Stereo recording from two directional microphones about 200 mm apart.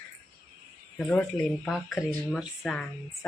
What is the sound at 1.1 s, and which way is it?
A woman's voice, 5° left (ahead or behind).